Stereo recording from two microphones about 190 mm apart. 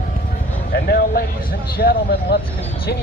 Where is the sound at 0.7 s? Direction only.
55° left (ahead or behind).